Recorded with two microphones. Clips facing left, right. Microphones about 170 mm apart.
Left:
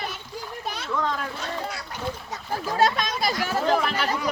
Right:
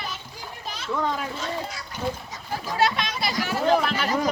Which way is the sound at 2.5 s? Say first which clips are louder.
Left 2 dB; 45° left (ahead or behind).